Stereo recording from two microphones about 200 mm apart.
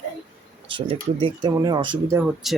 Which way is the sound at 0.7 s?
25° right (ahead or behind).